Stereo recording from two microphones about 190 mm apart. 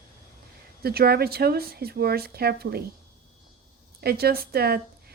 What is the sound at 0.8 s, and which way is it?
Speech, 55° right (ahead or behind).